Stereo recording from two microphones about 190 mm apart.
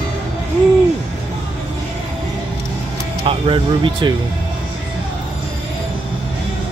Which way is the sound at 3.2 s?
30° right (ahead or behind).